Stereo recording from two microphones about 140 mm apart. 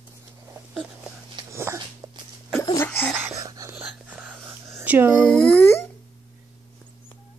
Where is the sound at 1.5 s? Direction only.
20° right (ahead or behind).